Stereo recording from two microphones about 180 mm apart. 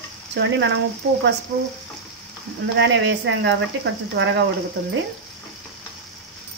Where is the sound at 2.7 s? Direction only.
75° right (ahead or behind).